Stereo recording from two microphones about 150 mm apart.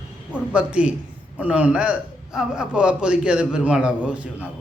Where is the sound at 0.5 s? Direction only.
5° right (ahead or behind).